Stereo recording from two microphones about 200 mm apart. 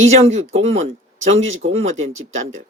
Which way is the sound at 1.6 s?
45° right (ahead or behind).